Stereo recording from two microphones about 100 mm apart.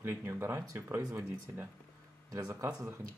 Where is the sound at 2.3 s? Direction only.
35° right (ahead or behind).